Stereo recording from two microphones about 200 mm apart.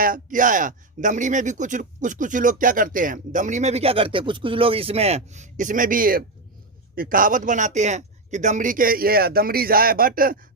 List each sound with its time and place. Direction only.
0.0 s speech: 45° right (ahead or behind)